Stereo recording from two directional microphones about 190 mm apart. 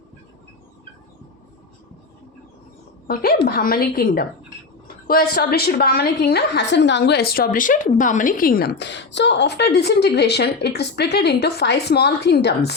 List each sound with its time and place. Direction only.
3.1 s a woman's voice: 50° left (ahead or behind)